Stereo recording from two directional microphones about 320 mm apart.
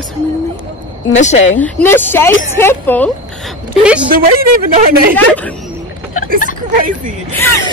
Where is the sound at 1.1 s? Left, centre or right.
Left.